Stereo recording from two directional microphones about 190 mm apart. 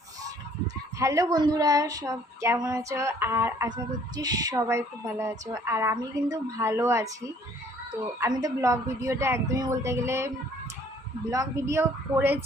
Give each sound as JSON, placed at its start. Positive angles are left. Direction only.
{"t": 0.9, "sound": "speech", "side_deg": -15}
{"t": 8.2, "sound": "speech", "side_deg": -20}